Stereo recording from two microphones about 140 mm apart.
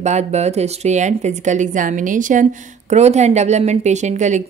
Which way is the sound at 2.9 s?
55° right (ahead or behind).